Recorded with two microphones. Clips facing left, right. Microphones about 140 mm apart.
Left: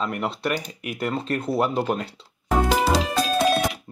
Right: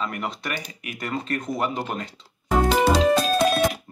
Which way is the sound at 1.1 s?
30° left (ahead or behind).